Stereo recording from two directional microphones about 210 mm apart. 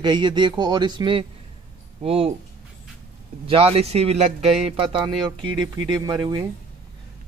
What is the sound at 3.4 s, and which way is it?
A man's voice, 25° right (ahead or behind).